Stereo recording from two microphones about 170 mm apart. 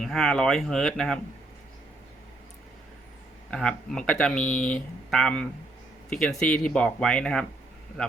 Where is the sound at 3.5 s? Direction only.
5° left (ahead or behind).